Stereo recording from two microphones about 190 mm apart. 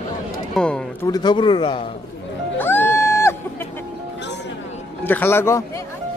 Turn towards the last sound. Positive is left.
turn(degrees=15)  # may be behind; listen again after turning